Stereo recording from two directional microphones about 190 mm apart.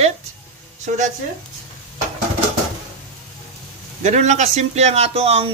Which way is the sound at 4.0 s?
35° right (ahead or behind).